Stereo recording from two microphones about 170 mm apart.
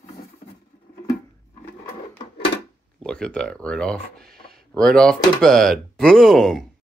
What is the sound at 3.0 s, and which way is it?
Speech, 5° left (ahead or behind).